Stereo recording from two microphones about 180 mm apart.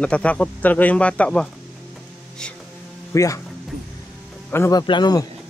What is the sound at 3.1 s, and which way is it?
Speech, 20° left (ahead or behind).